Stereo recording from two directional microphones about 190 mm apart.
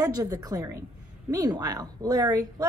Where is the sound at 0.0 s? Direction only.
20° right (ahead or behind).